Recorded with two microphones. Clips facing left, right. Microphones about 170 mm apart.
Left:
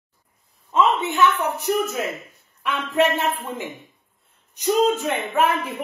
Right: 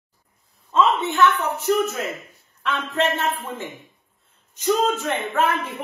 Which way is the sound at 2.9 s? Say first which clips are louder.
Left 4 dB; 15° left (ahead or behind).